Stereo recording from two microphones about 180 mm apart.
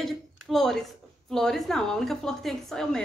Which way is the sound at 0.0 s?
Centre (ahead or behind).